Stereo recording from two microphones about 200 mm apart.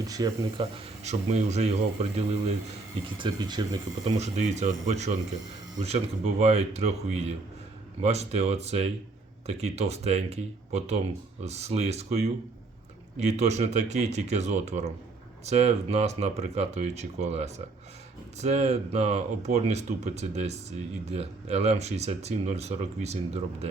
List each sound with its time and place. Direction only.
0.0 s speech: 20° right (ahead or behind)
3.2 s speech: 20° right (ahead or behind)
4.2 s speech: 35° right (ahead or behind)